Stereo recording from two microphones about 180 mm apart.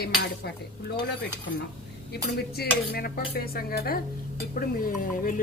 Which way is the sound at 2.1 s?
60° left (ahead or behind).